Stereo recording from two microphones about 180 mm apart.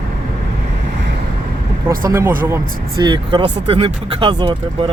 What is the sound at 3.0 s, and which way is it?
Speech, 25° right (ahead or behind).